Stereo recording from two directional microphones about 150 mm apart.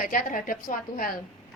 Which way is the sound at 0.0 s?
65° left (ahead or behind).